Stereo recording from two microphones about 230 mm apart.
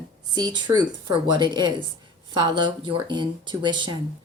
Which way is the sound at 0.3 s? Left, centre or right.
Centre.